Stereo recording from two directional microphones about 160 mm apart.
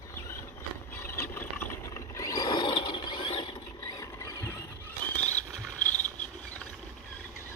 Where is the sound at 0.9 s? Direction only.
15° left (ahead or behind).